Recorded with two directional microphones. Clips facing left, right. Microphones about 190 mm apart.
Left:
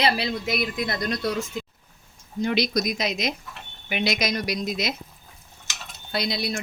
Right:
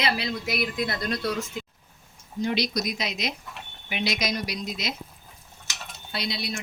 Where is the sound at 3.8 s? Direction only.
55° left (ahead or behind).